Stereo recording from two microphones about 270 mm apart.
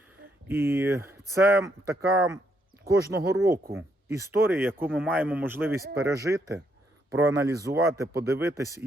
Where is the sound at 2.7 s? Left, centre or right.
Right.